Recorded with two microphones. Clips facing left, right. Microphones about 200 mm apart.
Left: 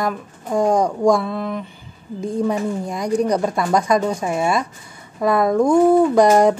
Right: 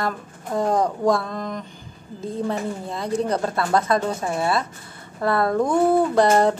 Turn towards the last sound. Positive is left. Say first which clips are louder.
# left 4 dB
turn(degrees=10)  # may be behind; listen again after turning